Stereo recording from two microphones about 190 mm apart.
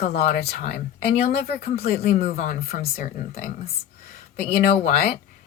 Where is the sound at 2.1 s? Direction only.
35° left (ahead or behind).